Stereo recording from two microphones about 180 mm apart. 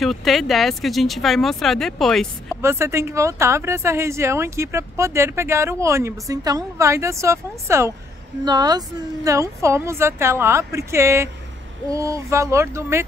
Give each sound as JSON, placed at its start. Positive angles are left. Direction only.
{"t": 0.0, "sound": "speech", "side_deg": 0}
{"t": 2.5, "sound": "a woman's voice", "side_deg": -15}